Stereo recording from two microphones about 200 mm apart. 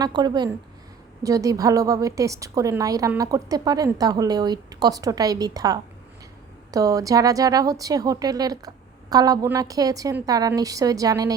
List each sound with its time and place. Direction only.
0.0 s a woman's voice: 20° right (ahead or behind)